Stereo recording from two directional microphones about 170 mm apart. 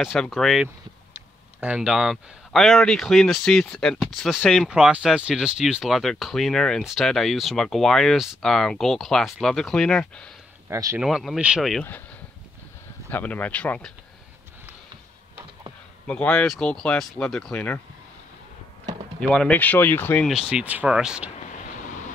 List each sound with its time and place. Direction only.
0.1 s speech: 5° left (ahead or behind)
10.7 s speech: 15° right (ahead or behind)
11.0 s speech: centre (ahead or behind)
13.1 s speech: 10° left (ahead or behind)
16.1 s speech: 5° left (ahead or behind)
19.1 s speech: 5° left (ahead or behind)
20.2 s speech: 5° right (ahead or behind)